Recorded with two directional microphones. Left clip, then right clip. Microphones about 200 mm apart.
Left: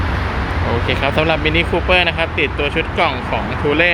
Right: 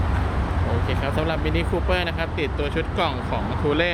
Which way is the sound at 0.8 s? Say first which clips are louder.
Left 11 dB; 15° left (ahead or behind).